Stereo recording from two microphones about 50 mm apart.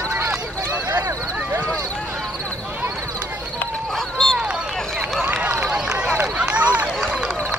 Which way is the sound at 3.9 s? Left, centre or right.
Centre.